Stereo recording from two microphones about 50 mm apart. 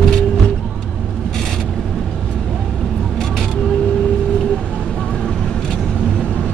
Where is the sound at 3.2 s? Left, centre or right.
Centre.